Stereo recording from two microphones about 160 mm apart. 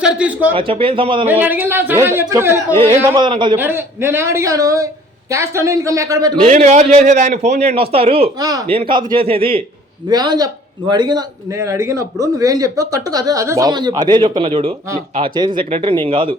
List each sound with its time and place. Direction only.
0.0 s speech: 5° right (ahead or behind)
0.5 s speech: 35° right (ahead or behind)
1.3 s speech: 10° right (ahead or behind)
3.2 s speech: 30° right (ahead or behind)
3.6 s speech: 15° right (ahead or behind)
6.4 s a man's voice: 45° right (ahead or behind)
8.4 s speech: 25° right (ahead or behind)
8.6 s speech: 35° right (ahead or behind)